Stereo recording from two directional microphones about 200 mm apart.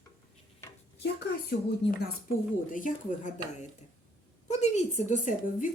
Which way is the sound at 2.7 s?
40° left (ahead or behind).